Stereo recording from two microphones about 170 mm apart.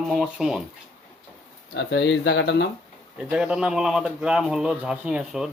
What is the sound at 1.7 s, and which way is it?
Speech, 90° left.